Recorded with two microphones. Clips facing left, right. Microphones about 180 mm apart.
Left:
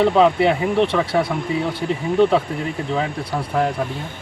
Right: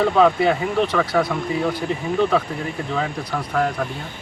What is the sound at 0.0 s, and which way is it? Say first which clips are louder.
Speech: left 1 dB; 25° left (ahead or behind).